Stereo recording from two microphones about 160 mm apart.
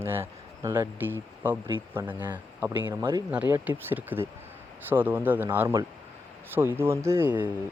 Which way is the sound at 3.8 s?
15° right (ahead or behind).